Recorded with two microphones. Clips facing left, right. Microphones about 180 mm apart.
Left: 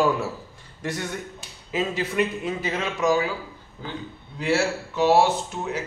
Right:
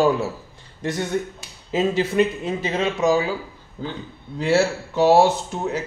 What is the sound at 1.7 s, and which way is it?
Speech, 25° right (ahead or behind).